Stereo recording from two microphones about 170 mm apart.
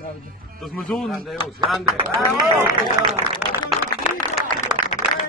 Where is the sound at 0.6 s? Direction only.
Centre (ahead or behind).